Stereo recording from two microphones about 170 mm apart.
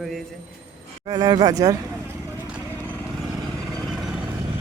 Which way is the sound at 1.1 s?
20° right (ahead or behind).